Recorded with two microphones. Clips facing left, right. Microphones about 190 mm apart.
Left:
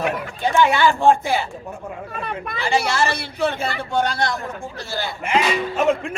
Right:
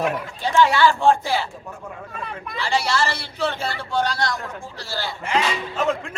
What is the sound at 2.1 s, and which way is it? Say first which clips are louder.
Speech: left 5 dB; 65° left (ahead or behind).